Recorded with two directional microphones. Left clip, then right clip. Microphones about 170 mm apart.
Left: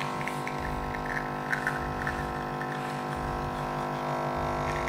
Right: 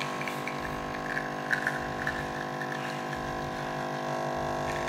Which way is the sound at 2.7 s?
5° left (ahead or behind).